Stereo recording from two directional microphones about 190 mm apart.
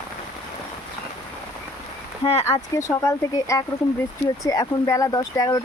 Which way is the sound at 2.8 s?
15° left (ahead or behind).